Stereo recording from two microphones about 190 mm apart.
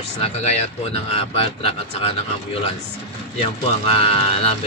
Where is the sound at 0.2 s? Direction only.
35° left (ahead or behind).